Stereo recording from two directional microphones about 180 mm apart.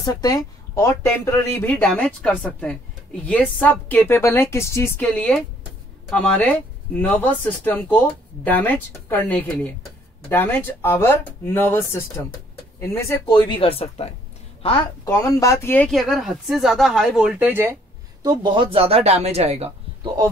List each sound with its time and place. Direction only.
0.0 s speech: 20° left (ahead or behind)
13.3 s speech: 30° left (ahead or behind)
15.0 s speech: 15° left (ahead or behind); by 17.7 s 10° right (ahead or behind)
18.2 s speech: 25° right (ahead or behind)